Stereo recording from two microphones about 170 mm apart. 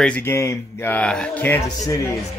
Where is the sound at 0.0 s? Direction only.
10° left (ahead or behind).